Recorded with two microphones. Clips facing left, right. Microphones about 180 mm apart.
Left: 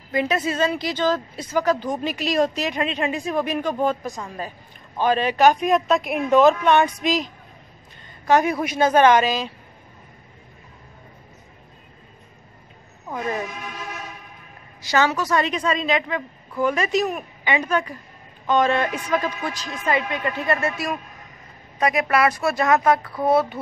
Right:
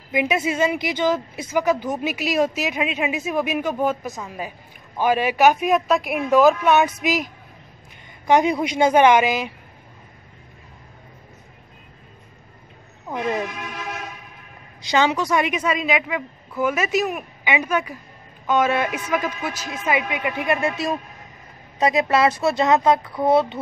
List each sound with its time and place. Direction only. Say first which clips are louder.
0.1 s speech: right 1 dB; 10° right (ahead or behind)
8.3 s speech: right 1 dB; 15° right (ahead or behind)
13.1 s speech: right 2 dB; 20° right (ahead or behind)
14.9 s speech: right 1 dB; 15° right (ahead or behind)